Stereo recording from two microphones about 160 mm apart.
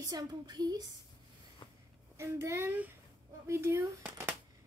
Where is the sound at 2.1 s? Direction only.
15° right (ahead or behind).